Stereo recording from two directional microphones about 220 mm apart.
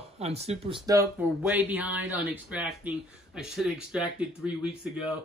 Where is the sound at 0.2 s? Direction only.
30° right (ahead or behind).